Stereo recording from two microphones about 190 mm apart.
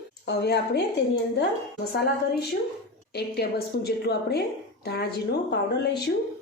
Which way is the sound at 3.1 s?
60° left (ahead or behind).